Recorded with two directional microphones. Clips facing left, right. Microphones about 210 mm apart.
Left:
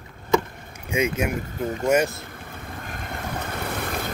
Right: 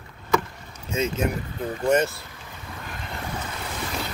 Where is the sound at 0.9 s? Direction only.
15° left (ahead or behind).